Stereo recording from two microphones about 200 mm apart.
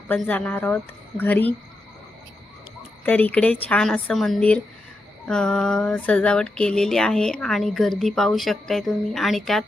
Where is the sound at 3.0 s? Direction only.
10° left (ahead or behind).